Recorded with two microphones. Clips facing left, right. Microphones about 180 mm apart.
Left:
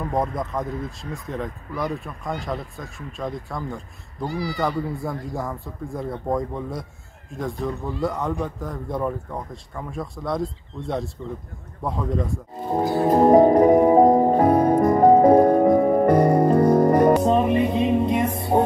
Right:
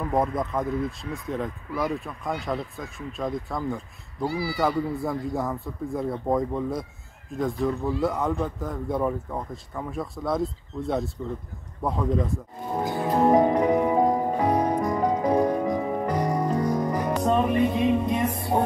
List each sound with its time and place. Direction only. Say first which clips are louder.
0.1 s speech: right 1 dB; centre (ahead or behind)
12.7 s music: left 6 dB; 35° left (ahead or behind); by 17.2 s 60° left (ahead or behind)
17.2 s music: left 3 dB; 20° left (ahead or behind)